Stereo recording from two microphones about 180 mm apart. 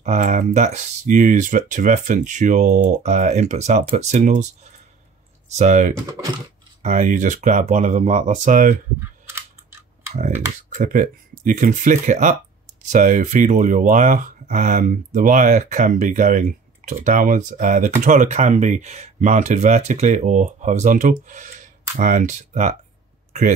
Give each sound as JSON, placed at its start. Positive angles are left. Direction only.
{"t": 0.0, "sound": "speech", "side_deg": -40}
{"t": 5.6, "sound": "speech", "side_deg": -40}
{"t": 6.2, "sound": "typing", "side_deg": -15}
{"t": 6.8, "sound": "speech", "side_deg": -45}
{"t": 9.2, "sound": "a sound", "side_deg": -15}
{"t": 10.8, "sound": "speech", "side_deg": -45}